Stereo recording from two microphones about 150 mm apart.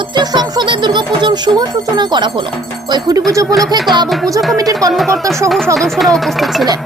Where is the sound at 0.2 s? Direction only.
30° right (ahead or behind).